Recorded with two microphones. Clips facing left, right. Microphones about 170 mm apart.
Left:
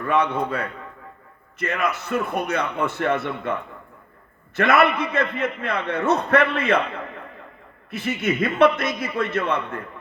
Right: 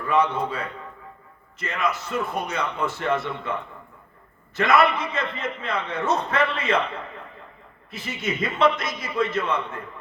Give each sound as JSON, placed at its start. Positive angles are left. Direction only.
{"t": 0.1, "sound": "a man's voice", "side_deg": 60}
{"t": 4.5, "sound": "a man's voice", "side_deg": 60}
{"t": 7.9, "sound": "a man's voice", "side_deg": 60}